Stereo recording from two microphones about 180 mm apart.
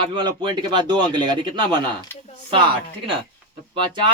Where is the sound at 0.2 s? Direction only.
25° right (ahead or behind).